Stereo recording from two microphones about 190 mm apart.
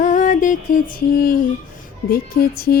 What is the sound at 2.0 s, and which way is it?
Speech, 50° left (ahead or behind).